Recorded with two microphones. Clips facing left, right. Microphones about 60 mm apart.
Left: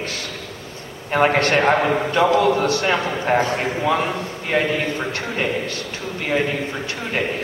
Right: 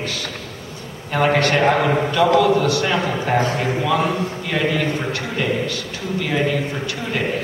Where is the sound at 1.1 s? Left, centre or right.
Left.